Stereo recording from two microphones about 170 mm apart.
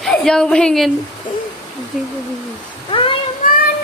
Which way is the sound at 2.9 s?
30° left (ahead or behind).